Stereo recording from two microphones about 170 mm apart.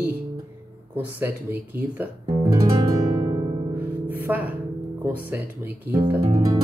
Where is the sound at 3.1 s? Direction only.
30° right (ahead or behind).